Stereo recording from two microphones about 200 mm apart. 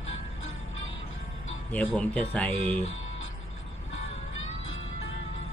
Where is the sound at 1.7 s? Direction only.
5° left (ahead or behind).